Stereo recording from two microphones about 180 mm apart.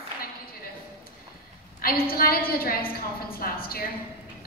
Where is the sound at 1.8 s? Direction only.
55° left (ahead or behind).